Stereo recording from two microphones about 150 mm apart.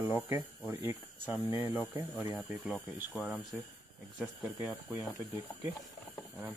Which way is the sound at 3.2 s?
Centre (ahead or behind).